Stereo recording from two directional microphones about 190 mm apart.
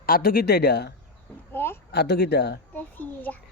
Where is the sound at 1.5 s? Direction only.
10° left (ahead or behind).